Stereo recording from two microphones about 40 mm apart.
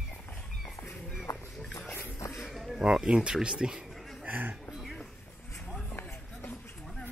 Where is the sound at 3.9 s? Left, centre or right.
Centre.